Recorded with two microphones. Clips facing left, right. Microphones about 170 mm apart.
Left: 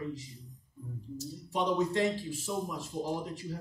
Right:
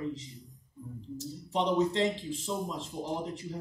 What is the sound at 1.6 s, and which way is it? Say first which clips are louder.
A man's voice: right 2 dB; 15° right (ahead or behind).